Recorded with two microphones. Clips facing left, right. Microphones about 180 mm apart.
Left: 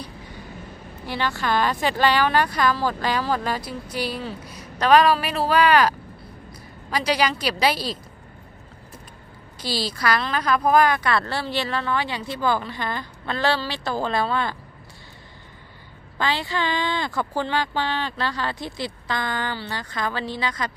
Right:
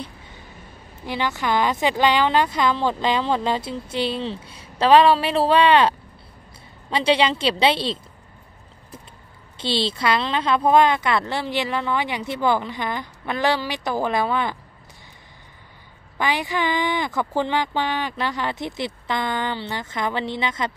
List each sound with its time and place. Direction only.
1.0 s a woman's voice: 20° right (ahead or behind)
9.6 s a woman's voice: 25° right (ahead or behind)
16.2 s a woman's voice: 15° right (ahead or behind)